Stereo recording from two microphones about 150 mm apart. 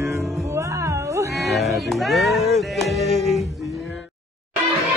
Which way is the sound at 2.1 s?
Centre (ahead or behind).